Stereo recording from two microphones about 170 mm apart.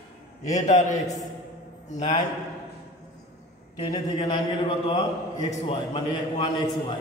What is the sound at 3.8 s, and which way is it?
Speech, 30° left (ahead or behind).